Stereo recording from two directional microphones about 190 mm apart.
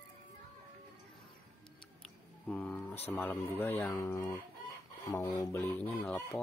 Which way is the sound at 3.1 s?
10° left (ahead or behind).